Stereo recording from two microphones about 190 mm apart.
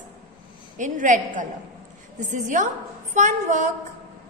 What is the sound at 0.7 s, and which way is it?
A woman's voice, 40° right (ahead or behind).